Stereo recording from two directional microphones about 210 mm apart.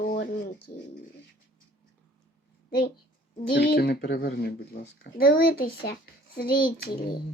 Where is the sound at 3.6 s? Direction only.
50° left (ahead or behind).